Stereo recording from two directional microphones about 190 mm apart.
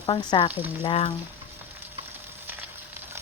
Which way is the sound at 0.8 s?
30° left (ahead or behind).